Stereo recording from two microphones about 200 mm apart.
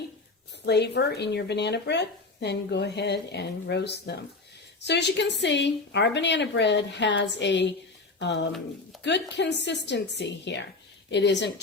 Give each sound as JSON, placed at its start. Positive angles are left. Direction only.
{"t": 0.6, "sound": "speech", "side_deg": 60}
{"t": 9.0, "sound": "speech", "side_deg": 60}